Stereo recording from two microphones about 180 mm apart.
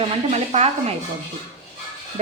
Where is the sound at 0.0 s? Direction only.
35° right (ahead or behind).